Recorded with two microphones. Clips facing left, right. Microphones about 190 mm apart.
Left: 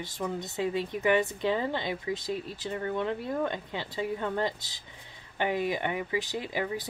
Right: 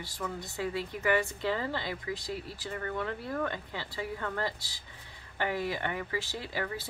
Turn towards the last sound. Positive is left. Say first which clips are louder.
# left 4 dB
turn(degrees=15)  # may be behind; listen again after turning